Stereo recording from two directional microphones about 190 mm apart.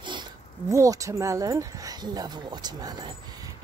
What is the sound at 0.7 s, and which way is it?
A woman's voice, 15° right (ahead or behind).